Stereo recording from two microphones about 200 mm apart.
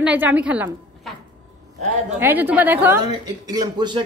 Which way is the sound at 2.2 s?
10° right (ahead or behind).